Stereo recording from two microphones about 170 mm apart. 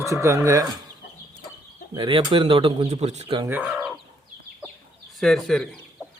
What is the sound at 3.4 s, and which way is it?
Speech, 10° right (ahead or behind).